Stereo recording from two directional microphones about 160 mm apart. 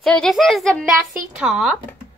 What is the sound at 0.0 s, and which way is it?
Speech, 5° left (ahead or behind).